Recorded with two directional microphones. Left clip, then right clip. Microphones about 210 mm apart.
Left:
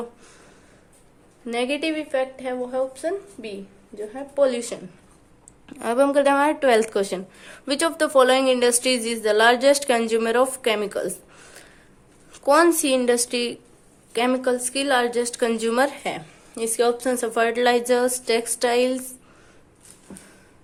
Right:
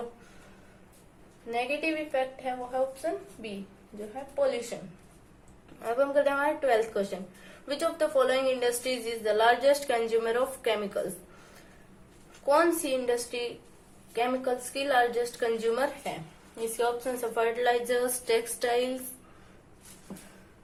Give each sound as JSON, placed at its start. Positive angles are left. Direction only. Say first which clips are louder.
{"t": 1.5, "sound": "a woman's voice", "louder": "left 5 dB", "side_deg": 50}
{"t": 4.7, "sound": "a woman's voice", "louder": "left 6 dB", "side_deg": 50}
{"t": 12.5, "sound": "a woman's voice", "louder": "left 7 dB", "side_deg": 40}